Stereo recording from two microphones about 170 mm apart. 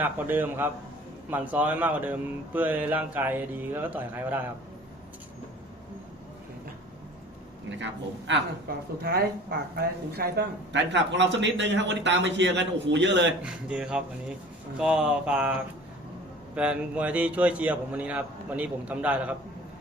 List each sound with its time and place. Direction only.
0.0 s speech: 10° right (ahead or behind)
8.3 s a woman's voice: 70° right (ahead or behind); by 13.2 s 90° right
13.4 s speech: 5° right (ahead or behind)